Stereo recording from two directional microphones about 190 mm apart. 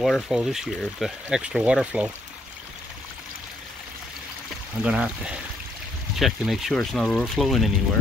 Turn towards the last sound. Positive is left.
turn(degrees=0)  # may be behind; listen again after turning